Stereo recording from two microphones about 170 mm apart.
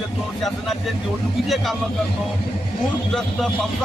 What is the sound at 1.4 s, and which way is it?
Speech, centre (ahead or behind).